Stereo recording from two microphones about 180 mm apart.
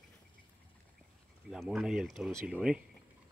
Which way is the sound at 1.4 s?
Centre (ahead or behind).